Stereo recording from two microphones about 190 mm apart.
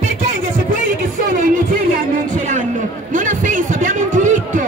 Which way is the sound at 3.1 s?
40° right (ahead or behind).